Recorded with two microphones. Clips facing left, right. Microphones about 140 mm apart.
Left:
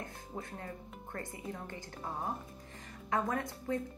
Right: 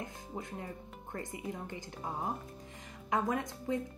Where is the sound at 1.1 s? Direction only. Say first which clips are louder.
Right 2 dB; 15° right (ahead or behind).